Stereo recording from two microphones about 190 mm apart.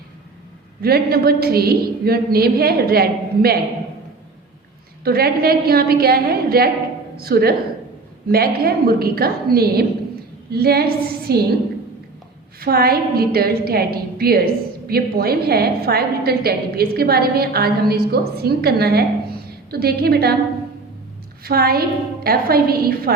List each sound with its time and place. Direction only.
0.8 s a woman's voice: 55° right (ahead or behind)
5.0 s a woman's voice: 55° right (ahead or behind)
12.5 s a woman's voice: 55° right (ahead or behind)
21.4 s a woman's voice: 55° right (ahead or behind)